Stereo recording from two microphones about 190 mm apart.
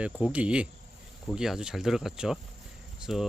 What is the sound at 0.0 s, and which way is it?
Speech, 5° right (ahead or behind).